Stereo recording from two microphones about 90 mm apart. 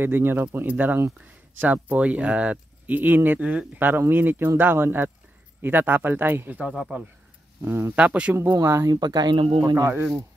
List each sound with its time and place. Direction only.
0.0 s speech: 25° right (ahead or behind)
7.6 s speech: 25° right (ahead or behind)
8.5 s speech: 40° right (ahead or behind)
8.9 s speech: 50° right (ahead or behind)
9.4 s speech: 70° right (ahead or behind)